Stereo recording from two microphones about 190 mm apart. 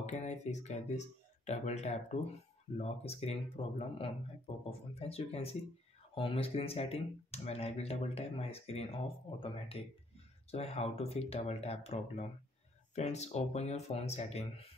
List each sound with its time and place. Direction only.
0.0 s speech: 40° left (ahead or behind)